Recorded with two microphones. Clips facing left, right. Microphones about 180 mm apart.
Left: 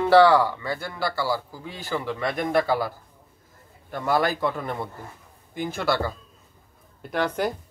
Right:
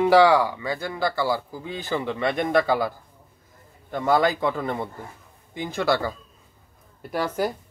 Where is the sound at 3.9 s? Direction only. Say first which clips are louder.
Right 3 dB; 20° right (ahead or behind).